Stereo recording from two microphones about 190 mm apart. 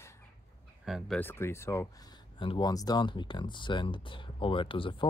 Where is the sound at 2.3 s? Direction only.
25° left (ahead or behind).